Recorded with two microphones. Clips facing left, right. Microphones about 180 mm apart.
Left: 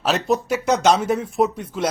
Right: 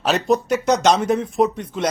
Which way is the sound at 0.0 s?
5° left (ahead or behind).